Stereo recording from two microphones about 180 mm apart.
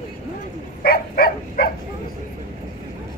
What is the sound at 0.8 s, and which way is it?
Dog, 60° left (ahead or behind).